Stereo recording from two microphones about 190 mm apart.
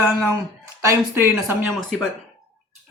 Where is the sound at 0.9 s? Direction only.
10° right (ahead or behind).